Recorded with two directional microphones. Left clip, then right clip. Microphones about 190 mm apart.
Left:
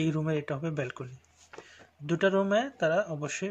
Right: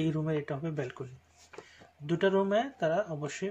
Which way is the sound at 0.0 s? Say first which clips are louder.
Left 2 dB; 30° left (ahead or behind).